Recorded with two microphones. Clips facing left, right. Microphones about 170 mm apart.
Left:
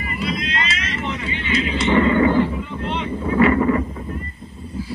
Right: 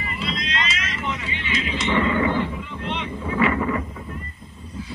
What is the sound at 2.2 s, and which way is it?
Boat, 40° left (ahead or behind).